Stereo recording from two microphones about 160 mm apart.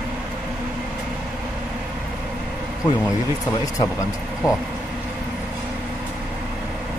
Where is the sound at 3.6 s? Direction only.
20° left (ahead or behind).